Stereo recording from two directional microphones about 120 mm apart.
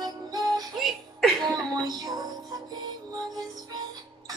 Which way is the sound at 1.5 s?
35° right (ahead or behind).